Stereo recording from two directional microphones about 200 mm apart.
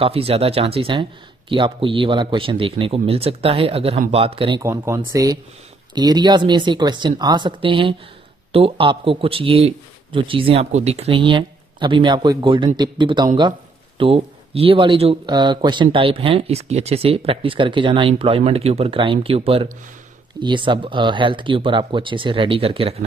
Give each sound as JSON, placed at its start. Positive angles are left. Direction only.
{"t": 0.0, "sound": "speech", "side_deg": -30}
{"t": 4.6, "sound": "speech", "side_deg": -15}